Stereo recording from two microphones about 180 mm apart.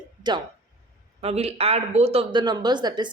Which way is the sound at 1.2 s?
35° right (ahead or behind).